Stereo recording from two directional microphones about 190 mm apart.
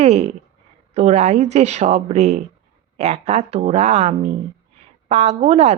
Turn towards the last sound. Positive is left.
turn(degrees=-35)  # may be behind; listen again after turning